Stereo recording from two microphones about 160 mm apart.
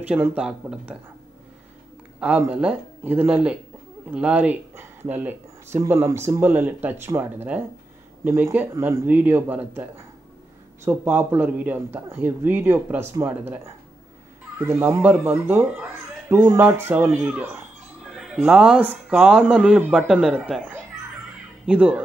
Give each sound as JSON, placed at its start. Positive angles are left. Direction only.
{"t": 0.0, "sound": "speech", "side_deg": -10}
{"t": 2.1, "sound": "a man's voice", "side_deg": -10}